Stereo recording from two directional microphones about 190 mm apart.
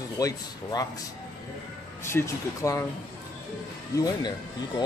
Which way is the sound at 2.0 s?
15° left (ahead or behind).